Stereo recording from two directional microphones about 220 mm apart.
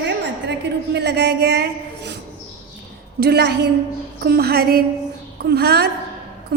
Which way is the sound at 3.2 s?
50° right (ahead or behind).